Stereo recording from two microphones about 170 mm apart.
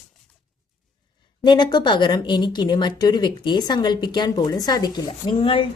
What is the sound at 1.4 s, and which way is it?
A woman's voice, 25° left (ahead or behind).